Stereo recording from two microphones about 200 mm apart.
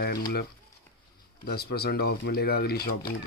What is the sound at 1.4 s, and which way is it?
Speech, 50° left (ahead or behind).